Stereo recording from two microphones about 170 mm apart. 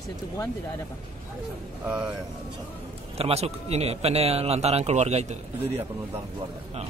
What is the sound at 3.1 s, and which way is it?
Speech, 35° right (ahead or behind).